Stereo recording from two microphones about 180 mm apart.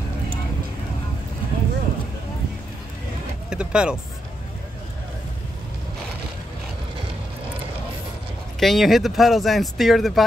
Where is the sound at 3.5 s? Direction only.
5° right (ahead or behind).